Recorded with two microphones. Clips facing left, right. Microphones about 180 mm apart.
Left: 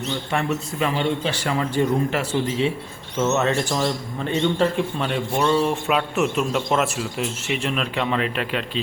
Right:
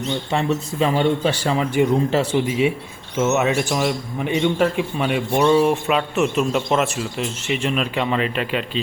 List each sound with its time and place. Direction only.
0.3 s a man's voice: 20° right (ahead or behind)
5.9 s speech: centre (ahead or behind)